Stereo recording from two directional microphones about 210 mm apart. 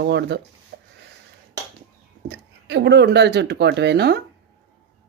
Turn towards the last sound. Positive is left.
turn(degrees=-50)  # may be behind; listen again after turning